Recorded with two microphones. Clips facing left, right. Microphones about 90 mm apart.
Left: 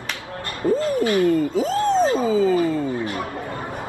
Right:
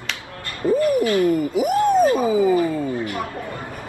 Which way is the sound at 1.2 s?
15° right (ahead or behind).